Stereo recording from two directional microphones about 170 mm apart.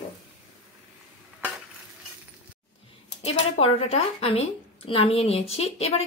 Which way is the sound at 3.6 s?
35° left (ahead or behind).